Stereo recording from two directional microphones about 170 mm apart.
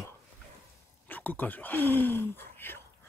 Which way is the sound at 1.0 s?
10° left (ahead or behind).